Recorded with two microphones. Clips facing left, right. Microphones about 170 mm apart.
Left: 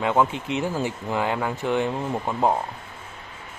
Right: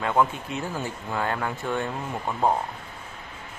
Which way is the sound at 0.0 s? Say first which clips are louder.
Left 2 dB; 20° left (ahead or behind).